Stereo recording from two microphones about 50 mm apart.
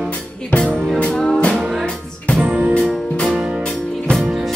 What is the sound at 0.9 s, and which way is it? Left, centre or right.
Music, left.